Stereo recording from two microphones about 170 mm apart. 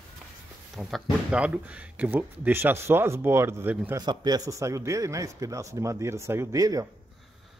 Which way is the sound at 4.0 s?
25° right (ahead or behind).